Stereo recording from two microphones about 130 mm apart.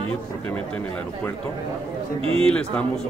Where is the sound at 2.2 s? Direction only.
45° right (ahead or behind).